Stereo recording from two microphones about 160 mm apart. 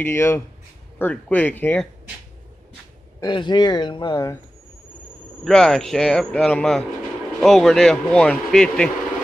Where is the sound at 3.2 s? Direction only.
25° left (ahead or behind).